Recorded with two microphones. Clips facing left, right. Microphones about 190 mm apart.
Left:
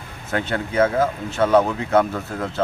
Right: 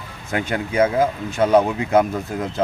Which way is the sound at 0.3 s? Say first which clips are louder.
Right 1 dB; 15° right (ahead or behind).